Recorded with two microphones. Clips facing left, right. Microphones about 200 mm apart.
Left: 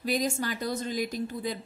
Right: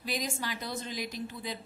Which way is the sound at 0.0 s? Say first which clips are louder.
Left 7 dB; 45° left (ahead or behind).